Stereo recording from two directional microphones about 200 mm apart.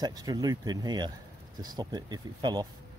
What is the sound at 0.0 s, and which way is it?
Speech, 20° right (ahead or behind).